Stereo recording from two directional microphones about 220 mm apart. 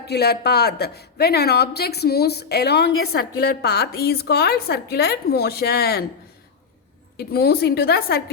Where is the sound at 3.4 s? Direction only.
45° left (ahead or behind).